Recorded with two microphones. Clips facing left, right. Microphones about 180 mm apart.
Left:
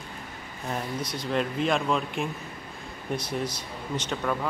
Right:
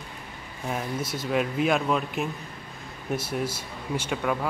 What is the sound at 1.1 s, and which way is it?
Speech, 5° right (ahead or behind).